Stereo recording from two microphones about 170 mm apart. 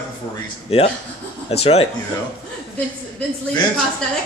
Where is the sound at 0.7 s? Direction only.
35° left (ahead or behind).